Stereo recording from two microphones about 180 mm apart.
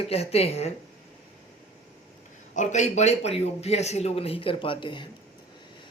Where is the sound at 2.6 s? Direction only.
40° left (ahead or behind).